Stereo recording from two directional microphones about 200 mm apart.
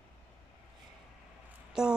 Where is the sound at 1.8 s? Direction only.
5° right (ahead or behind).